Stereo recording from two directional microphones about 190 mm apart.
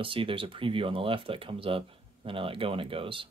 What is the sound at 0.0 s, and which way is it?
Speech, 30° right (ahead or behind).